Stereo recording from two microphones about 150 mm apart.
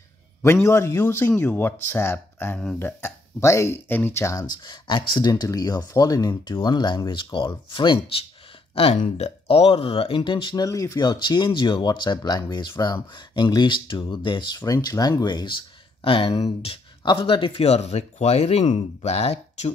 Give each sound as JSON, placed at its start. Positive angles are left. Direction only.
{"t": 0.4, "sound": "speech", "side_deg": 15}